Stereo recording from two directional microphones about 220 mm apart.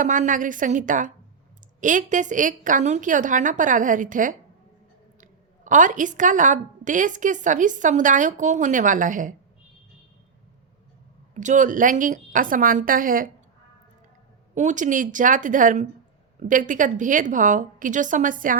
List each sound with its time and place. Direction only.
0.0 s a woman's voice: 35° right (ahead or behind)
11.3 s a woman's voice: 35° right (ahead or behind)
14.5 s a woman's voice: 30° right (ahead or behind)